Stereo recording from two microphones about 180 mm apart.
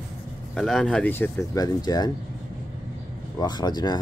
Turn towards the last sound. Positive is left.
turn(degrees=25)  # may be behind; listen again after turning